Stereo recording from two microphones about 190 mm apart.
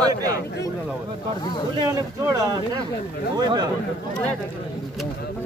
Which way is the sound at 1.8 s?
20° right (ahead or behind).